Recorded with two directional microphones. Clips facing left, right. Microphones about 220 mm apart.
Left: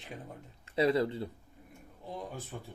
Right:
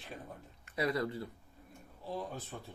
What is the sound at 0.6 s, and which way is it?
Speech, 25° left (ahead or behind).